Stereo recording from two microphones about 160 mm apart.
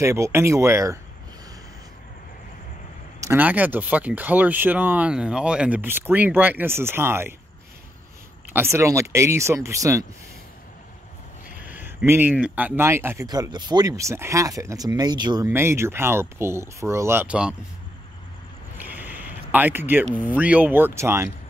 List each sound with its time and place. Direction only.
0.0 s speech: 20° right (ahead or behind)
3.2 s speech: 15° right (ahead or behind)
8.5 s speech: 15° right (ahead or behind)
11.6 s speech: 10° right (ahead or behind); by 15.5 s 25° right (ahead or behind)
15.5 s speech: 15° right (ahead or behind)
18.8 s a sound: 10° right (ahead or behind)
20.2 s speech: 10° right (ahead or behind)